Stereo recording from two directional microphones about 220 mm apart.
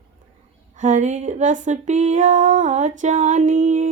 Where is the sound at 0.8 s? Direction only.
35° right (ahead or behind).